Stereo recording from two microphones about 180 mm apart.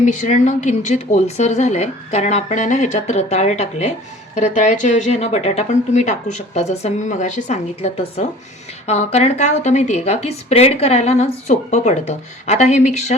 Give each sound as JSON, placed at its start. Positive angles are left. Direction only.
{"t": 0.0, "sound": "a woman's voice", "side_deg": 45}